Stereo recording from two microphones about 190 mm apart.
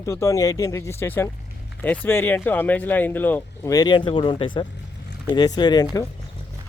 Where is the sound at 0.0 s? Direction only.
15° left (ahead or behind).